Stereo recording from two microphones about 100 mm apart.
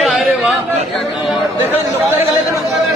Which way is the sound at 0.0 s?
Centre (ahead or behind).